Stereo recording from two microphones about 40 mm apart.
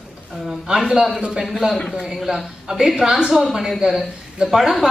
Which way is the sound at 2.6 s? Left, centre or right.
Centre.